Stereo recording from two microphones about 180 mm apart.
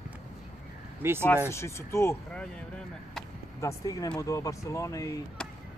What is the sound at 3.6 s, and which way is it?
Speech, 20° left (ahead or behind).